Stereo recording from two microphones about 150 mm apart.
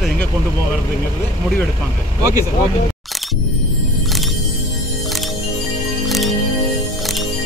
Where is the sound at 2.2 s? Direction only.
25° right (ahead or behind).